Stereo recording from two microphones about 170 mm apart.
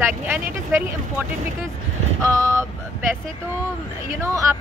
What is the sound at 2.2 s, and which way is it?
Speech, 15° right (ahead or behind).